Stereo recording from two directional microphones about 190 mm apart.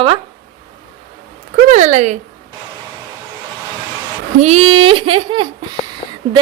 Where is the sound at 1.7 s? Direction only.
40° right (ahead or behind).